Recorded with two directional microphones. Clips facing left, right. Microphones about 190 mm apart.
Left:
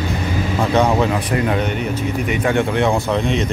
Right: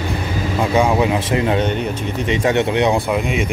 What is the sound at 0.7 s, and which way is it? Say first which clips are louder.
Speech: even; 10° right (ahead or behind).